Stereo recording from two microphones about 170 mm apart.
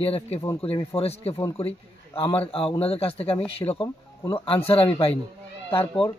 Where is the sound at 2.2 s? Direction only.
35° left (ahead or behind).